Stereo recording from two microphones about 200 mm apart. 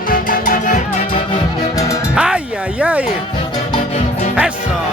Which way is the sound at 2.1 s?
5° right (ahead or behind).